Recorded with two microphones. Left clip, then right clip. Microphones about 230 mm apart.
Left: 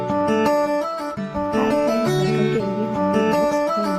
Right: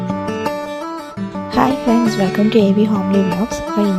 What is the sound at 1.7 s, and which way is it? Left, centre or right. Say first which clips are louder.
Speech: right 2 dB; centre.